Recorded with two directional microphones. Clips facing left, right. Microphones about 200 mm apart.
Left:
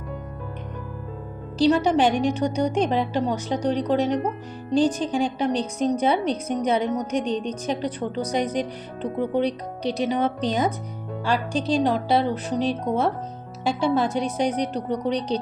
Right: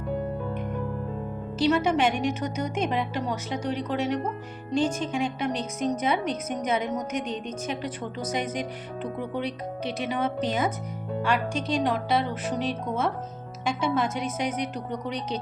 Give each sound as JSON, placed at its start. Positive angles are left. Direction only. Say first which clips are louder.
{"t": 1.5, "sound": "a woman's voice", "louder": "left 4 dB", "side_deg": 35}